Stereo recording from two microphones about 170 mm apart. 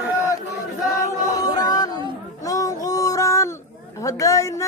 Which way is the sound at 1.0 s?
20° left (ahead or behind).